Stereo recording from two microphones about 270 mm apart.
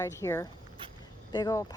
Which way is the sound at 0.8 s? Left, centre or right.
Centre.